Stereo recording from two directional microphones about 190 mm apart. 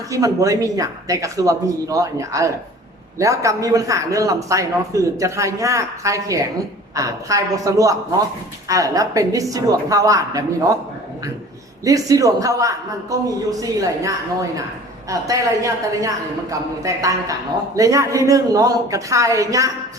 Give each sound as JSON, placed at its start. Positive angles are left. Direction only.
{"t": 0.1, "sound": "a man's voice", "side_deg": -15}
{"t": 11.9, "sound": "a man's voice", "side_deg": -20}